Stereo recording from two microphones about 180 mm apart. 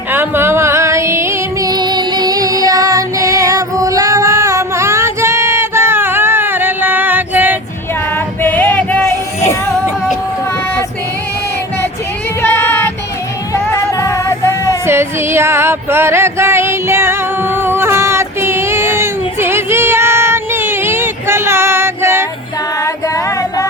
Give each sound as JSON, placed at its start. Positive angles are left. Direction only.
{"t": 0.1, "sound": "music", "side_deg": -10}
{"t": 8.1, "sound": "music", "side_deg": 10}
{"t": 12.4, "sound": "child singing", "side_deg": 10}
{"t": 13.5, "sound": "music", "side_deg": 15}
{"t": 14.8, "sound": "music", "side_deg": -15}
{"t": 22.8, "sound": "music", "side_deg": 15}